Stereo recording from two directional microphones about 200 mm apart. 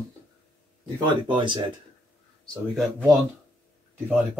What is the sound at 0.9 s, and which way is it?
Speech, 25° right (ahead or behind).